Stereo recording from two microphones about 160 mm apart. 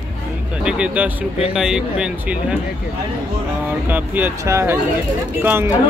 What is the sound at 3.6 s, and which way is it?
Speech, 10° right (ahead or behind).